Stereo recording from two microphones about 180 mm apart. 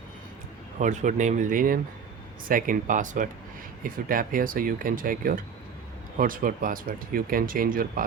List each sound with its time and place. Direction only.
0.8 s speech: 40° right (ahead or behind)